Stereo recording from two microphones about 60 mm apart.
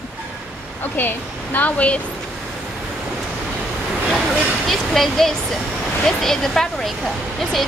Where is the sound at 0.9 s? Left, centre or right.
Left.